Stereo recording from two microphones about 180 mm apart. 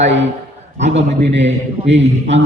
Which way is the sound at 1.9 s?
90° right.